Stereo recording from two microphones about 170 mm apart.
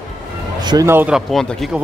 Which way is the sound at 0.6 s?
20° right (ahead or behind).